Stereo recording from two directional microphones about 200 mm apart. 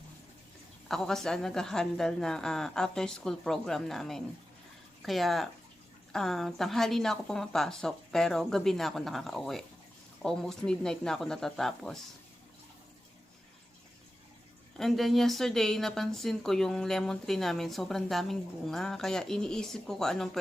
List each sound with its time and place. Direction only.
0.9 s speech: centre (ahead or behind)
14.8 s speech: centre (ahead or behind)